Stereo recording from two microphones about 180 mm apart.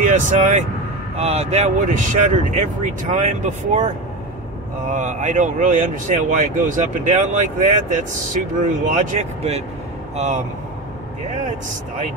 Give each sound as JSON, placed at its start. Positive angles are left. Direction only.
{"t": 0.0, "sound": "speech", "side_deg": -45}
{"t": 4.9, "sound": "speech", "side_deg": -45}